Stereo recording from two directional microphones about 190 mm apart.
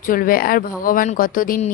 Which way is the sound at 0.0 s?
45° left (ahead or behind).